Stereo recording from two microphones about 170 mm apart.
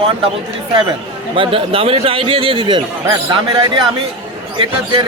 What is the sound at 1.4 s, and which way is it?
A man's voice, 35° right (ahead or behind).